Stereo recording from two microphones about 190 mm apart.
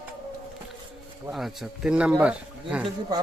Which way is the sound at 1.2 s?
Centre (ahead or behind).